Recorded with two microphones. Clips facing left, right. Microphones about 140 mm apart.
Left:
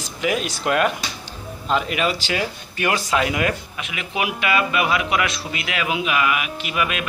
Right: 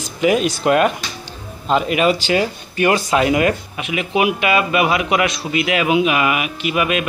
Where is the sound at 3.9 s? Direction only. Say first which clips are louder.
Right 8 dB; 10° right (ahead or behind).